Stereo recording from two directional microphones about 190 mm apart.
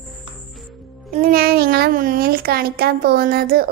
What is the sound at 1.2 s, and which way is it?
A child's voice, 50° right (ahead or behind).